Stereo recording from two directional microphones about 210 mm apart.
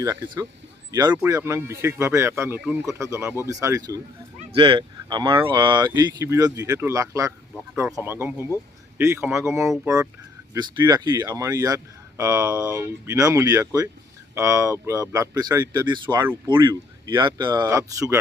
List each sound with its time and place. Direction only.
0.0 s speech: 15° right (ahead or behind)